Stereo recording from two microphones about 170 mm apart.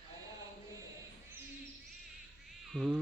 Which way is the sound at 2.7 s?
5° right (ahead or behind).